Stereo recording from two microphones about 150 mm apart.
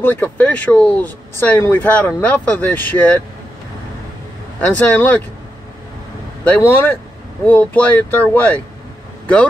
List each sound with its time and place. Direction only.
0.0 s speech: 10° left (ahead or behind)
4.6 s speech: 10° left (ahead or behind)
6.4 s speech: 10° left (ahead or behind)